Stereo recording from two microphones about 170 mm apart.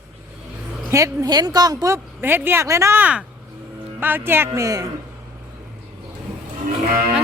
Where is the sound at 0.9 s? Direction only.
20° right (ahead or behind).